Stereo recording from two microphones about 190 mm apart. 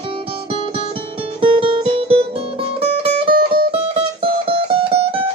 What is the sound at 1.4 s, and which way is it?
Music, 30° right (ahead or behind).